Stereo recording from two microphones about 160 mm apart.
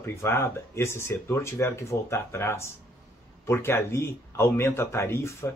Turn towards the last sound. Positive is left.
turn(degrees=15)  # may be behind; listen again after turning